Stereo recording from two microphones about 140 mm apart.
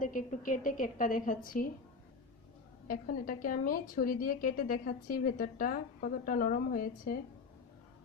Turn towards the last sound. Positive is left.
turn(degrees=75)  # may be behind; listen again after turning